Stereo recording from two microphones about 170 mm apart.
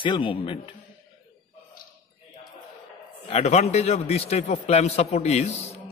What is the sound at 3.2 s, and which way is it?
A man's voice, 40° left (ahead or behind).